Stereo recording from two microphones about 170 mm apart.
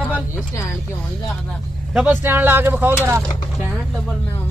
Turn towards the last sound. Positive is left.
turn(degrees=-15)  # may be behind; listen again after turning